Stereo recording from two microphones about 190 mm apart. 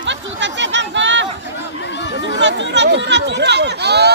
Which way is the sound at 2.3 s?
70° right (ahead or behind).